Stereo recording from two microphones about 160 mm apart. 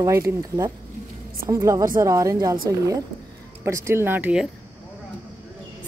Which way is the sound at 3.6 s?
15° right (ahead or behind).